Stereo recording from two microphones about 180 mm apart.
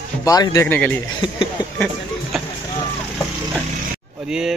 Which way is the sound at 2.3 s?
Centre (ahead or behind).